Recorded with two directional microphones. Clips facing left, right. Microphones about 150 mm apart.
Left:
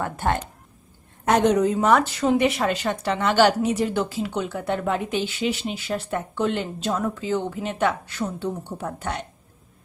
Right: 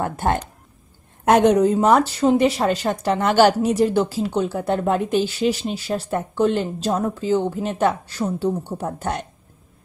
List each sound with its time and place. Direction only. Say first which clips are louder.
0.0 s a woman's voice: right 3 dB; 40° right (ahead or behind)
1.2 s a woman's voice: right 4 dB; 55° right (ahead or behind)
1.7 s speech: right 3 dB; 35° right (ahead or behind)